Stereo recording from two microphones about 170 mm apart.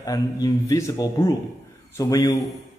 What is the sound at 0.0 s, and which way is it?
A man's voice, 20° left (ahead or behind).